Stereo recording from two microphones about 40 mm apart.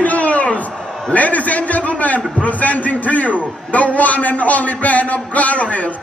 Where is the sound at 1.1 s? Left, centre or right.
Left.